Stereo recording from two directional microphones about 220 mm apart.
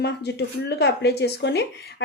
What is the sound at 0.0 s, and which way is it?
Speech, 50° left (ahead or behind).